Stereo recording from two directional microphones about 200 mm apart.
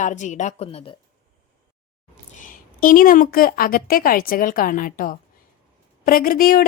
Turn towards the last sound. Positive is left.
turn(degrees=45)  # may be behind; listen again after turning